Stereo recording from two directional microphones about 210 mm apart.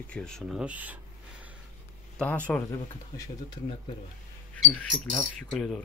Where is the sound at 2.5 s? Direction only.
10° left (ahead or behind).